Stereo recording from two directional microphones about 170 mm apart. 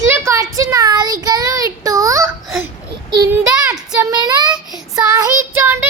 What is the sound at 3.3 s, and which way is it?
Child singing, 20° right (ahead or behind).